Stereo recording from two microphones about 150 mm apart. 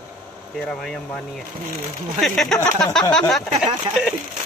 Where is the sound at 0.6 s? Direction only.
5° left (ahead or behind).